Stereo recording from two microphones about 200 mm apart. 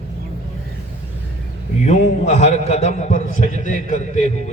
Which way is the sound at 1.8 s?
35° left (ahead or behind).